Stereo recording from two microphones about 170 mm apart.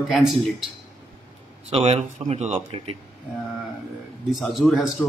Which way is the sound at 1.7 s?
40° right (ahead or behind).